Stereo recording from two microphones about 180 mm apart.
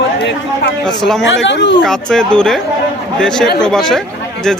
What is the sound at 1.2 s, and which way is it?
Speech, 90° left.